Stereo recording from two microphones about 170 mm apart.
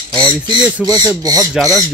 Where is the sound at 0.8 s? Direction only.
20° right (ahead or behind).